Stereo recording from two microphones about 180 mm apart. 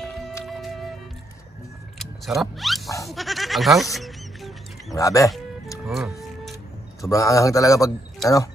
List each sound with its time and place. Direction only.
0.5 s music: centre (ahead or behind)
2.0 s vehicle: centre (ahead or behind)
3.0 s music: centre (ahead or behind)
4.9 s a man's voice: 20° left (ahead or behind)
5.9 s speech: centre (ahead or behind)
7.0 s a man's voice: 20° left (ahead or behind)